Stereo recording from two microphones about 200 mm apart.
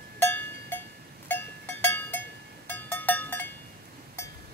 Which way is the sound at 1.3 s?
10° left (ahead or behind).